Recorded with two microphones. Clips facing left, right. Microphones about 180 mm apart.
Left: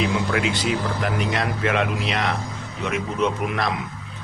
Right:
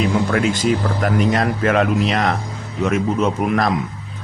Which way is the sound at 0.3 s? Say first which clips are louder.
Right 5 dB; 45° right (ahead or behind).